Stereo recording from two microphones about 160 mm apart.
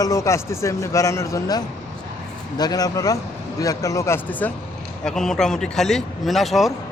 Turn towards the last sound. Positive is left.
turn(degrees=0)  # may be behind; listen again after turning